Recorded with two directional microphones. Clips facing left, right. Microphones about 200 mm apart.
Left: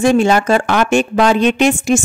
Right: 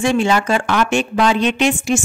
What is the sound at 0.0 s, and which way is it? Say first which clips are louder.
A woman's voice: left 4 dB; 40° left (ahead or behind).